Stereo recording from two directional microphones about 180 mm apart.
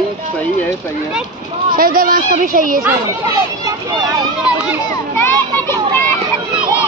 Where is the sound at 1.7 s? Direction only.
50° right (ahead or behind).